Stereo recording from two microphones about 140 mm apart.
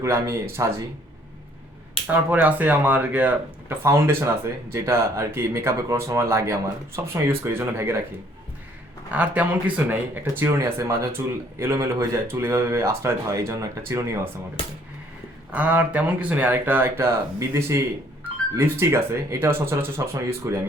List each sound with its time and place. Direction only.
0.0 s speech: 20° right (ahead or behind)
2.3 s speech: 10° right (ahead or behind)
9.1 s speech: 10° right (ahead or behind)
15.5 s speech: 10° right (ahead or behind)